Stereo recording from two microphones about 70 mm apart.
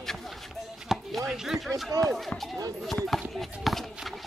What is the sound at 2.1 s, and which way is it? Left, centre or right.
Speech, centre.